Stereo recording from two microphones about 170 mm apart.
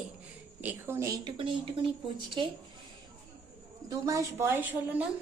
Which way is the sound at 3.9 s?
20° right (ahead or behind).